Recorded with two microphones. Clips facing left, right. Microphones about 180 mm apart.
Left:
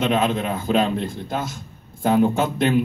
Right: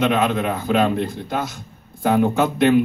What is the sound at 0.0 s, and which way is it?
Speech, 60° right (ahead or behind).